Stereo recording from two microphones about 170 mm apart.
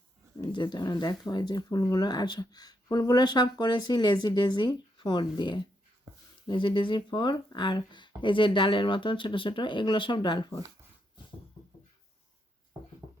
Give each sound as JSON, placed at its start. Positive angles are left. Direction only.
{"t": 0.3, "sound": "speech", "side_deg": 25}